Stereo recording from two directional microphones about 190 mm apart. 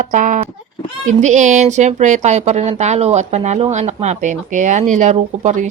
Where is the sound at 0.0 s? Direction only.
40° right (ahead or behind).